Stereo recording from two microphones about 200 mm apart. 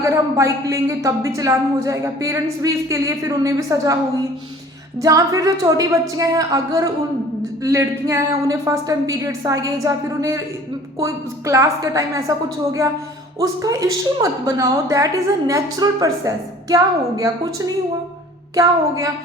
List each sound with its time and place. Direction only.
0.0 s a woman's voice: 15° right (ahead or behind)
13.4 s a woman's voice: 15° right (ahead or behind)
18.5 s a woman's voice: 15° right (ahead or behind)